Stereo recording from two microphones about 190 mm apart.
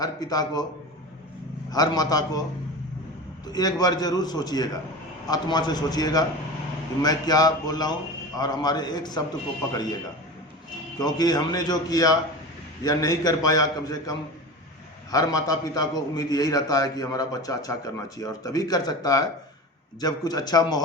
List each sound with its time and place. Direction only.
0.0 s a man's voice: 20° left (ahead or behind)
1.7 s a man's voice: 20° left (ahead or behind)
3.4 s a man's voice: 20° left (ahead or behind)
10.9 s a man's voice: 20° left (ahead or behind)